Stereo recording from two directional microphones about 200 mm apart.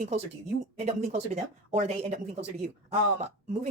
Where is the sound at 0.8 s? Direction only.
35° right (ahead or behind).